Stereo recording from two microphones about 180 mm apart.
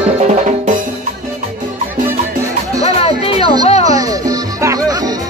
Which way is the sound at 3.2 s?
30° left (ahead or behind).